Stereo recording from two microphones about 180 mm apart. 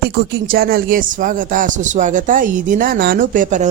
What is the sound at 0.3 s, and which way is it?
Speech, 55° right (ahead or behind).